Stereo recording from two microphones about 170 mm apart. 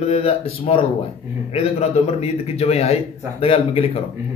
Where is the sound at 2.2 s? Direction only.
35° left (ahead or behind).